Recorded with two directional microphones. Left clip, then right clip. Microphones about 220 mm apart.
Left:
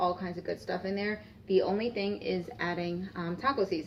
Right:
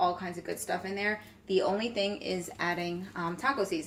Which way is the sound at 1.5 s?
35° right (ahead or behind).